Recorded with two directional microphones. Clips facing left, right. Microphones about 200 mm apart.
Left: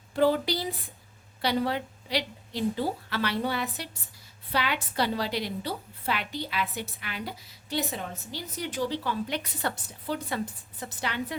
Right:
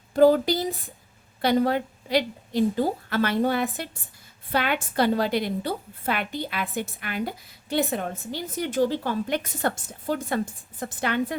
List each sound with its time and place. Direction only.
0.1 s a woman's voice: 45° right (ahead or behind)